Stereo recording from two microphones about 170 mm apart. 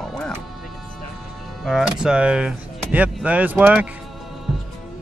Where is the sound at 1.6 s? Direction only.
5° right (ahead or behind).